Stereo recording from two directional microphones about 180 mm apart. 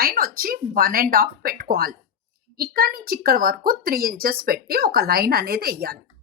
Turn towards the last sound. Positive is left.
turn(degrees=-55)  # may be behind; listen again after turning